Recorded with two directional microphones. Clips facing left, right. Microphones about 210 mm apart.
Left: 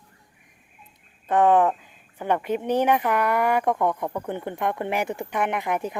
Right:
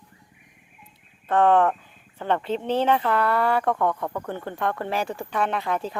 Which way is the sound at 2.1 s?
15° left (ahead or behind).